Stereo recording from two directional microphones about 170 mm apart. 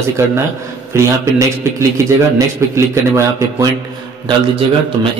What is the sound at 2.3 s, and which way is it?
Speech, 15° right (ahead or behind).